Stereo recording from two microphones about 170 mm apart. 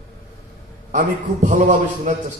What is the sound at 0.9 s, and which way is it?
A man's voice, 50° right (ahead or behind).